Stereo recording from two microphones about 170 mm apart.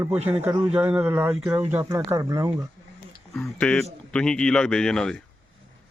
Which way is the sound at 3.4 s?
5° left (ahead or behind).